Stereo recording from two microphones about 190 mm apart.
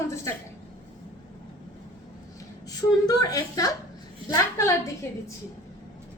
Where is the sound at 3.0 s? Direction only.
20° left (ahead or behind).